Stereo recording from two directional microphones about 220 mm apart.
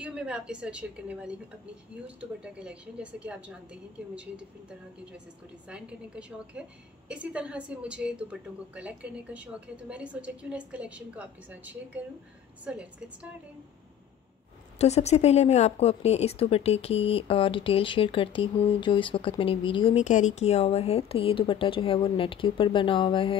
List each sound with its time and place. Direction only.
0.0 s a woman's voice: 5° right (ahead or behind)
14.8 s a woman's voice: 30° left (ahead or behind)